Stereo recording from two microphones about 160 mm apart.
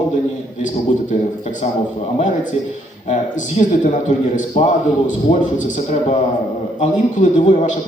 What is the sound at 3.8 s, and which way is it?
A man's voice, 50° left (ahead or behind).